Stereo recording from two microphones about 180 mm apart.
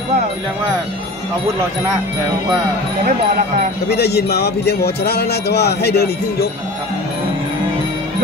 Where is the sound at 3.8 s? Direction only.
65° left (ahead or behind).